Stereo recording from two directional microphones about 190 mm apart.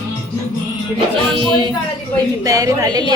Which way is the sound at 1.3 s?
25° right (ahead or behind).